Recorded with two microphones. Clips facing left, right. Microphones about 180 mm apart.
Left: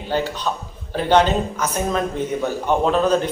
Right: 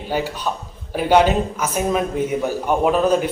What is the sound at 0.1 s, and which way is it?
A man's voice, 10° right (ahead or behind).